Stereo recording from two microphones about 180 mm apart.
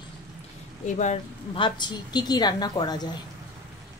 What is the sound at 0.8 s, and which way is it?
Speech, 40° left (ahead or behind).